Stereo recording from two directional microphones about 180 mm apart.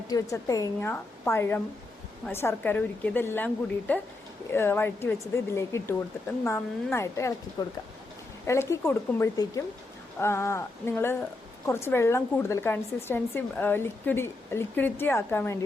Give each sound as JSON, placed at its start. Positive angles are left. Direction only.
{"t": 0.1, "sound": "a woman's voice", "side_deg": 20}